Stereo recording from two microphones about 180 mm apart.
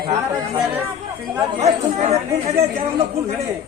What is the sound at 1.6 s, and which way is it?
Speech, 35° right (ahead or behind).